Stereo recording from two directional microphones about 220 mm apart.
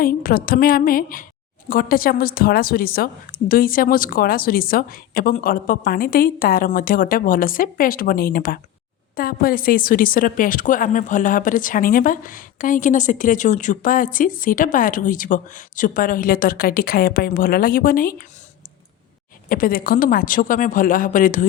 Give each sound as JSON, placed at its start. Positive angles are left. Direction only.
{"t": 0.0, "sound": "a woman's voice", "side_deg": 40}
{"t": 19.5, "sound": "a woman's voice", "side_deg": 40}